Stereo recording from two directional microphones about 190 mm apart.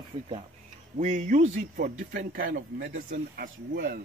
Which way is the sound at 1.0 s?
40° right (ahead or behind).